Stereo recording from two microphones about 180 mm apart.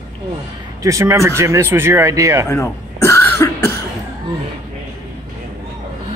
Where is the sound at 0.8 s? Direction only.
15° right (ahead or behind).